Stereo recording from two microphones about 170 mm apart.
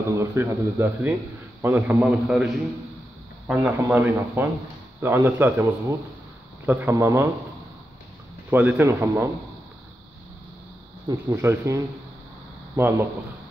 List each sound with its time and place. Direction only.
0.1 s a man's voice: 15° right (ahead or behind)
8.5 s a man's voice: 10° right (ahead or behind)
11.3 s a man's voice: 15° right (ahead or behind)